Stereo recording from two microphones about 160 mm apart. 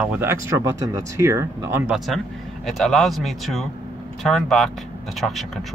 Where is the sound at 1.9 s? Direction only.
Centre (ahead or behind).